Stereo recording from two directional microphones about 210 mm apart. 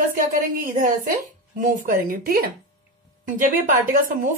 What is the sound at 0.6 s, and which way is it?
A woman's voice, 40° right (ahead or behind).